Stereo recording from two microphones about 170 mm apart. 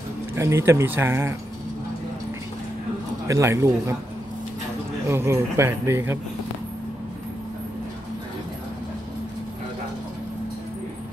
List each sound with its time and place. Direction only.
0.4 s speech: 15° right (ahead or behind)
3.3 s speech: 15° right (ahead or behind)
5.0 s speech: 15° right (ahead or behind)